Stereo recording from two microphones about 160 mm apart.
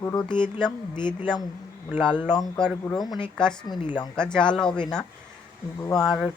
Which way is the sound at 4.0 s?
5° left (ahead or behind).